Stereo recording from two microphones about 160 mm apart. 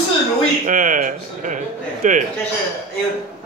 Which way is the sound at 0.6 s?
55° right (ahead or behind).